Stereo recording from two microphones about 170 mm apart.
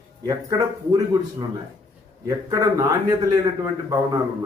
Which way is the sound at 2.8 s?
20° right (ahead or behind).